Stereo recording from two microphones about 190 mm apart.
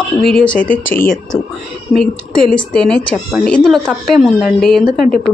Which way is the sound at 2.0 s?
5° left (ahead or behind).